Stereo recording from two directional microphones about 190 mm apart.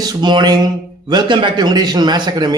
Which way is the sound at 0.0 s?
20° right (ahead or behind).